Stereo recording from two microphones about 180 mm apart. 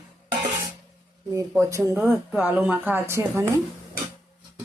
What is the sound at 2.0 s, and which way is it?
Speech, centre (ahead or behind).